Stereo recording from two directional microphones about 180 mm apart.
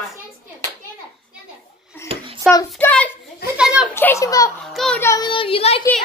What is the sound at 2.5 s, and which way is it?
Speech, centre (ahead or behind).